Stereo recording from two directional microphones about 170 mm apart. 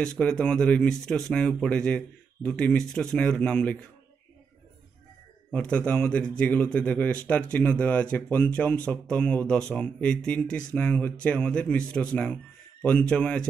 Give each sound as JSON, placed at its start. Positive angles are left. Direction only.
{"t": 0.0, "sound": "speech", "side_deg": 5}
{"t": 5.5, "sound": "a man's voice", "side_deg": 5}